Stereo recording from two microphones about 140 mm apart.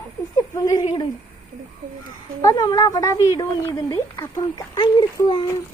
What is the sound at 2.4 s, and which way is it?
A woman's voice, 25° left (ahead or behind).